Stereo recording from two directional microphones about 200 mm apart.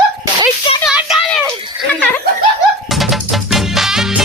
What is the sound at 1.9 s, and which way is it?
Speech, 5° left (ahead or behind).